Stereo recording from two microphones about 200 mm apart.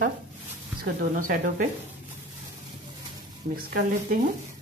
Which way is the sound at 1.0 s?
45° right (ahead or behind).